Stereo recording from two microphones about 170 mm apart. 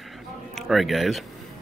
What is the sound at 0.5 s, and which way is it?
Speech, centre (ahead or behind).